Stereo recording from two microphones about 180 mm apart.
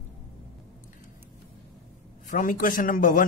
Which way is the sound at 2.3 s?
50° left (ahead or behind).